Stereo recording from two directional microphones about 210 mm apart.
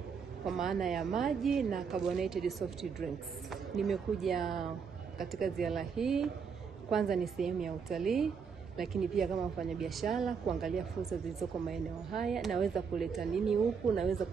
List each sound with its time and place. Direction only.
0.5 s speech: centre (ahead or behind)